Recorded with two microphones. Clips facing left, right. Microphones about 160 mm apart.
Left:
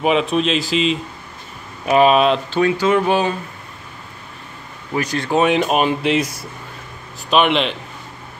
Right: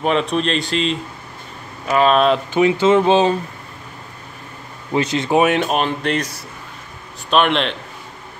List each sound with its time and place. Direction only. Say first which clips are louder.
0.0 s speech: left 1 dB; 5° left (ahead or behind)
1.9 s speech: left 2 dB; 20° left (ahead or behind)
2.1 s speech: even; centre (ahead or behind)
2.5 s speech: right 2 dB; 20° right (ahead or behind)
4.9 s speech: right 2 dB; 20° right (ahead or behind)
5.4 s speech: left 4 dB; centre (ahead or behind)